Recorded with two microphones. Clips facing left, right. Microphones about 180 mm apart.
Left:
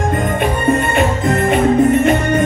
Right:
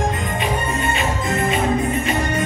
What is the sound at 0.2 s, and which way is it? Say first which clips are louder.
Music: left 6 dB; 55° left (ahead or behind).